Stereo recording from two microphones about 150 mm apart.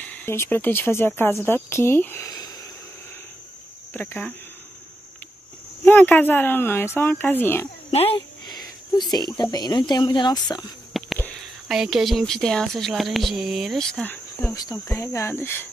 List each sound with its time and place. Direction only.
0.0 s speech: 10° left (ahead or behind)
3.9 s speech: 10° left (ahead or behind)
5.9 s speech: 10° left (ahead or behind)
7.9 s speech: 40° left (ahead or behind)
8.5 s a sound: 30° left (ahead or behind)
9.4 s speech: 25° left (ahead or behind)
10.9 s a sound: centre (ahead or behind)
11.6 s a woman's voice: 5° right (ahead or behind)
14.5 s speech: 25° left (ahead or behind)